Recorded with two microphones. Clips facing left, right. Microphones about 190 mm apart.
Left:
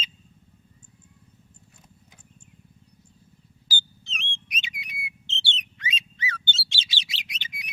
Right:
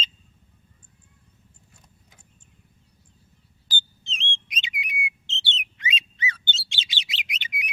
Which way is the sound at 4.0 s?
20° right (ahead or behind).